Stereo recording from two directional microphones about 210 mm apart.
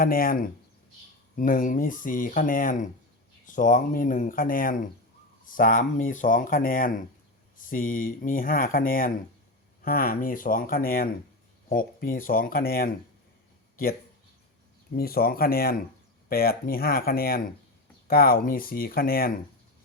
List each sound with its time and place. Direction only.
0.0 s speech: 45° left (ahead or behind)
14.9 s speech: 45° left (ahead or behind)